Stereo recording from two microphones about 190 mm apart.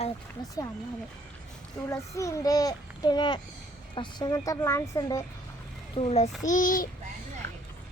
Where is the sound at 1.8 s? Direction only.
15° left (ahead or behind).